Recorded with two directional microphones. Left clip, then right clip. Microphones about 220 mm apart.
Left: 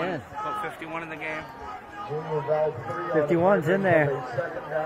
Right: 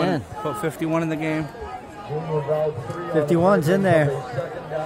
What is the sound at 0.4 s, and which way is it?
Speech, 50° right (ahead or behind).